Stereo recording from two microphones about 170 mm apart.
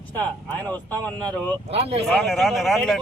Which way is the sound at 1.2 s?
35° right (ahead or behind).